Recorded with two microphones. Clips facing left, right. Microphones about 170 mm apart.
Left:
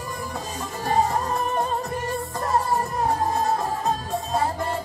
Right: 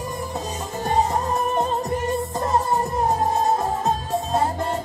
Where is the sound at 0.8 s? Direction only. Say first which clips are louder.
Right 1 dB; 20° right (ahead or behind).